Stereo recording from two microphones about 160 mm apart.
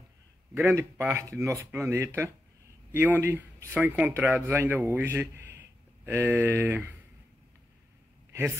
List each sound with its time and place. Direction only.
0.6 s a man's voice: 15° right (ahead or behind)